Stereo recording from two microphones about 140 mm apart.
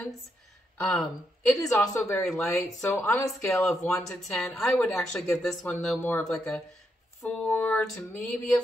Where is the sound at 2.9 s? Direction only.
15° left (ahead or behind).